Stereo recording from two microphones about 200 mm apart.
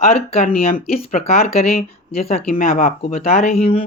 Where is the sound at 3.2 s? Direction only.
35° left (ahead or behind).